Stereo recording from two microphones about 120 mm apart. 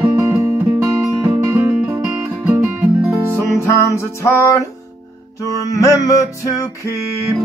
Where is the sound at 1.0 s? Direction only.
10° right (ahead or behind).